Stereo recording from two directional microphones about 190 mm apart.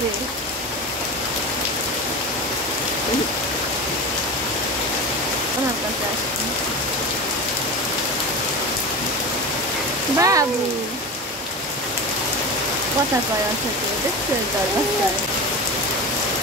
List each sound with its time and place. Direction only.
10.1 s speech: 15° right (ahead or behind)